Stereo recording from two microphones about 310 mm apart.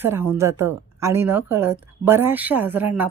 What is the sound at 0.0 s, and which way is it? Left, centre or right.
A woman's voice, centre.